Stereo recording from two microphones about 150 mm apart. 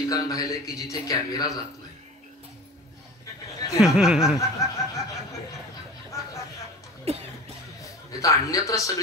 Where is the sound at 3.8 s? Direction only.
5° right (ahead or behind).